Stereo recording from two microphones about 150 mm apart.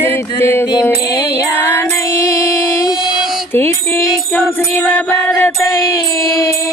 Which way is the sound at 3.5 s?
15° left (ahead or behind).